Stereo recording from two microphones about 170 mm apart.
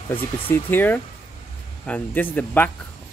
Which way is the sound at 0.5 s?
10° left (ahead or behind).